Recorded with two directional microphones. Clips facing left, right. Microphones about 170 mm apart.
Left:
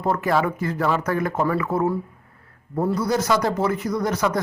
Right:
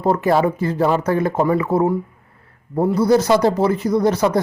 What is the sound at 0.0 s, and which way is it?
Speech, 30° right (ahead or behind).